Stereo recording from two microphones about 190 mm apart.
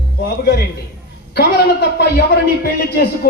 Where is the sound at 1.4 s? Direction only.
60° left (ahead or behind).